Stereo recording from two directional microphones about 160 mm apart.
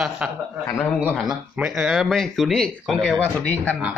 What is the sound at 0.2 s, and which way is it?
Speech, 5° right (ahead or behind).